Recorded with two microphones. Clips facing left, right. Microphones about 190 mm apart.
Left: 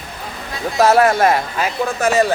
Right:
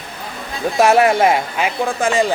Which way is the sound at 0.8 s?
20° right (ahead or behind).